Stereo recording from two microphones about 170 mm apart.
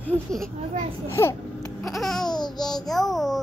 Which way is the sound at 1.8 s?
Centre (ahead or behind).